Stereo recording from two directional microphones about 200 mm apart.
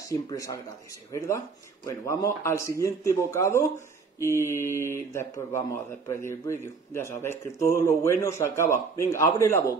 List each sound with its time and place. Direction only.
0.0 s speech: 15° left (ahead or behind)